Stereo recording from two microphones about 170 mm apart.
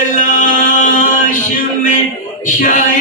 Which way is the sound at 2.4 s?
50° left (ahead or behind).